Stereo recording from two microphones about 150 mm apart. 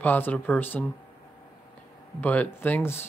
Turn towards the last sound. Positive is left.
turn(degrees=15)  # may be behind; listen again after turning